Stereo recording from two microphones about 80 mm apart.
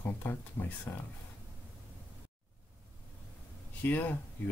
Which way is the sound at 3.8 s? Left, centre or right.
Left.